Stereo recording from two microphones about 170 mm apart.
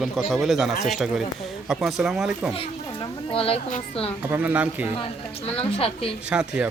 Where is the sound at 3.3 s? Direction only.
35° left (ahead or behind).